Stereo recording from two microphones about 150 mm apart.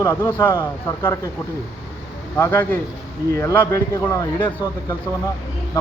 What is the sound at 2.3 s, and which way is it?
A man's voice, 15° left (ahead or behind).